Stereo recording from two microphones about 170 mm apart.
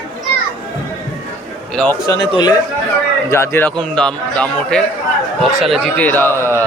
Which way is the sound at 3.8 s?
5° left (ahead or behind).